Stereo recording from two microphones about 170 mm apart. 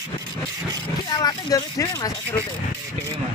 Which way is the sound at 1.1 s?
25° left (ahead or behind).